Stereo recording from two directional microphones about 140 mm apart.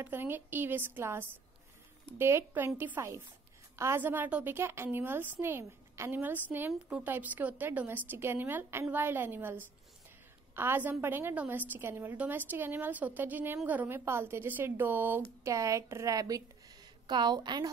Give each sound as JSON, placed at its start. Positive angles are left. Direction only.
{"t": 0.0, "sound": "a woman's voice", "side_deg": -15}